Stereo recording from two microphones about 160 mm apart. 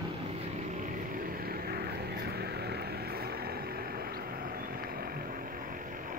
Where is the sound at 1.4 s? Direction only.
70° right (ahead or behind).